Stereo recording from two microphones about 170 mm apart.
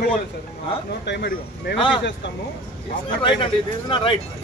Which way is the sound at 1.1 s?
75° left (ahead or behind).